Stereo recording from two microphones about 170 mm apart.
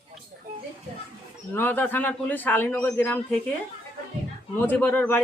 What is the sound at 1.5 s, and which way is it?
A man's voice, 10° left (ahead or behind).